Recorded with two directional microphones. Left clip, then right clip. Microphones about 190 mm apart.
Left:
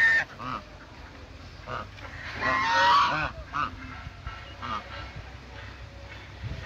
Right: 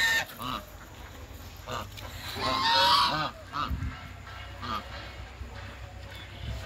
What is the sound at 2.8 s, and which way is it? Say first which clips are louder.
Goose: left 2 dB; 5° right (ahead or behind).